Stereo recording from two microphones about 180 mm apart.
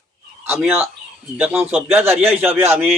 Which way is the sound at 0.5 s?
10° right (ahead or behind).